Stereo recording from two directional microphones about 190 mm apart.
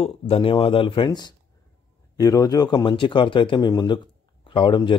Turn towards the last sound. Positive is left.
turn(degrees=25)  # may be behind; listen again after turning